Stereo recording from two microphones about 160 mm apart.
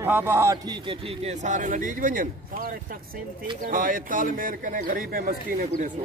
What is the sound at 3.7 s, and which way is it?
Speech, 60° right (ahead or behind).